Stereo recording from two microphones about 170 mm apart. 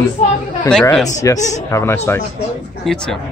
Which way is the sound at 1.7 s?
15° left (ahead or behind).